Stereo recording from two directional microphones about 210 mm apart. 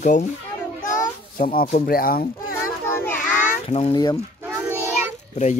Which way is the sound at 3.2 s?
35° left (ahead or behind).